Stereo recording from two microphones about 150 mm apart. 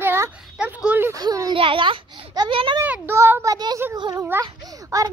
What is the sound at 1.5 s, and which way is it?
A child's voice, 35° right (ahead or behind).